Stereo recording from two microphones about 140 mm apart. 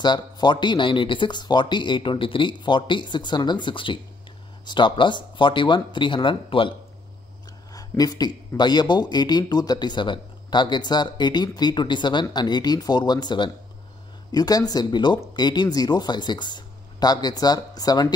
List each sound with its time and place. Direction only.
0.0 s speech: 30° left (ahead or behind)
7.7 s speech: 25° left (ahead or behind)